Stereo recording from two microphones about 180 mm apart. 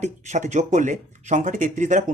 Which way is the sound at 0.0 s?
40° right (ahead or behind).